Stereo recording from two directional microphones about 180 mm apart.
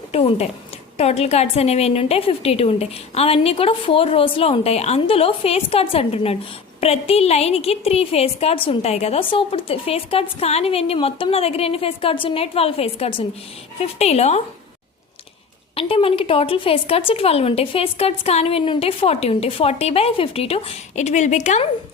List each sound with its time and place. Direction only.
0.1 s a sound: 35° left (ahead or behind)
0.9 s a woman's voice: 35° left (ahead or behind)
15.7 s a woman's voice: 30° left (ahead or behind)